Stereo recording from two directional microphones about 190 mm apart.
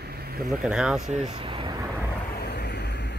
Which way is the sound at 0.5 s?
5° right (ahead or behind).